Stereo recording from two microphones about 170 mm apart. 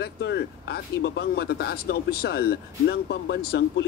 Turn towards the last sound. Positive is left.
turn(degrees=80)